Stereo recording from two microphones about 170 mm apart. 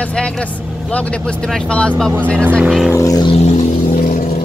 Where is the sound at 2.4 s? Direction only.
10° right (ahead or behind).